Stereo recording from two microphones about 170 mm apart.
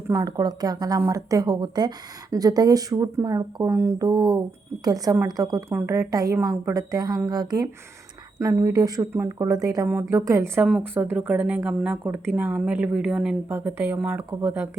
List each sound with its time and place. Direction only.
0.1 s a woman's voice: 20° right (ahead or behind)